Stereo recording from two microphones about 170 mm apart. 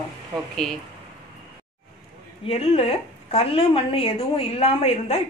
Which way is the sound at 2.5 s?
35° left (ahead or behind).